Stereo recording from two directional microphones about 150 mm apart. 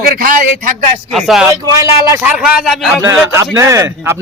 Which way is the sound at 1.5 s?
20° right (ahead or behind).